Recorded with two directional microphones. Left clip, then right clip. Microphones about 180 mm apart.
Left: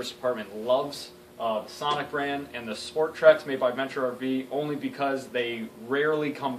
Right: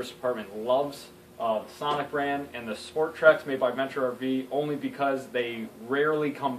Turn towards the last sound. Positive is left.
turn(degrees=0)  # may be behind; listen again after turning